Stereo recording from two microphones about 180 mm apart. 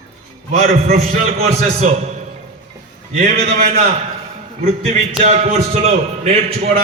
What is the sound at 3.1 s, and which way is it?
Speech, 45° right (ahead or behind).